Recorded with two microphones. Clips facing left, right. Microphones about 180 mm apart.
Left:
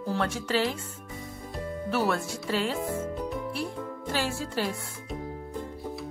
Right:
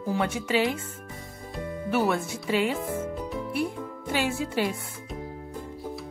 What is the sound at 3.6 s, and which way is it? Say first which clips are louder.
Music: right 3 dB; 15° right (ahead or behind).